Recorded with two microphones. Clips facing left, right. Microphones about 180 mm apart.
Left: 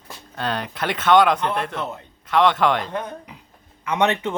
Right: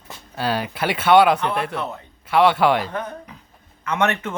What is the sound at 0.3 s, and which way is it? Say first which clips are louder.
Speech: right 3 dB; 5° right (ahead or behind).